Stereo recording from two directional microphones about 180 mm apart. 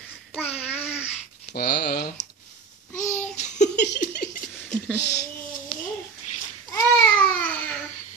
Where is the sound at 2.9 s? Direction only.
40° left (ahead or behind).